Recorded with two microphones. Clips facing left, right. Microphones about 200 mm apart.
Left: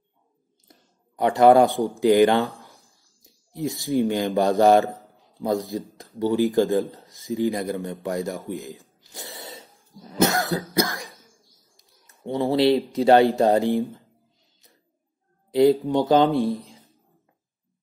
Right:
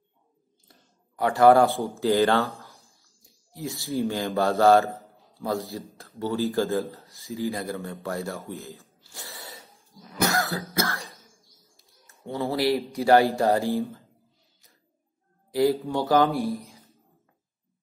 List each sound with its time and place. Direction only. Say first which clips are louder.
0.7 s speech: left 4 dB; 20° left (ahead or behind)
9.0 s a sound: left 4 dB; 20° left (ahead or behind)
10.1 s cough: left 4 dB; 20° left (ahead or behind)
11.7 s speech: right 2 dB; 15° left (ahead or behind)
15.5 s speech: left 5 dB; 20° left (ahead or behind)